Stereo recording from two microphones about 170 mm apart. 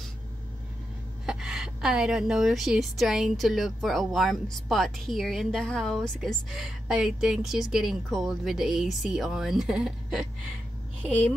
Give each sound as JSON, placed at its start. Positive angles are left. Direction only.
{"t": 1.2, "sound": "a woman's voice", "side_deg": -5}